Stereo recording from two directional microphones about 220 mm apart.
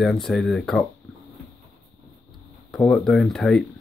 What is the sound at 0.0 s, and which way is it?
Speech, centre (ahead or behind).